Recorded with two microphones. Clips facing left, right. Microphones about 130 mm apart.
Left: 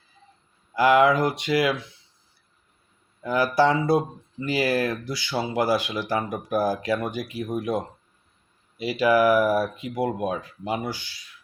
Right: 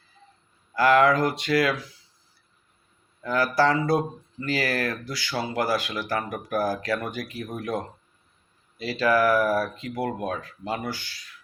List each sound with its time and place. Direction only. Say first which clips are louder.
0.7 s speech: left 1 dB; 15° left (ahead or behind)
3.2 s speech: left 2 dB; 20° left (ahead or behind)